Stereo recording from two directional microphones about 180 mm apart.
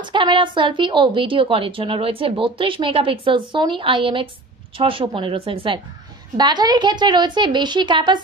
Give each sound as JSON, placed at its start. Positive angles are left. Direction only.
{"t": 0.0, "sound": "a woman's voice", "side_deg": -25}